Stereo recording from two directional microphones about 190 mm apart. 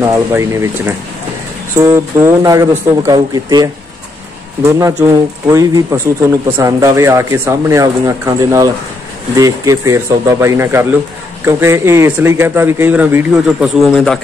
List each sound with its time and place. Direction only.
0.0 s speech: 15° right (ahead or behind); by 14.2 s 5° left (ahead or behind)